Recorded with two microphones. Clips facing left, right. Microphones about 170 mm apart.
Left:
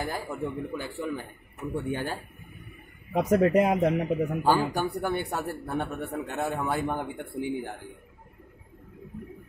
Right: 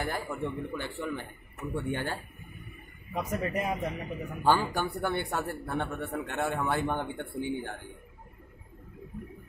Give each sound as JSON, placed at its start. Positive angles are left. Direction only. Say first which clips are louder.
{"t": 0.0, "sound": "a man's voice", "louder": "left 1 dB", "side_deg": 10}
{"t": 3.1, "sound": "a man's voice", "louder": "left 10 dB", "side_deg": 70}
{"t": 4.4, "sound": "a man's voice", "louder": "right 1 dB", "side_deg": 10}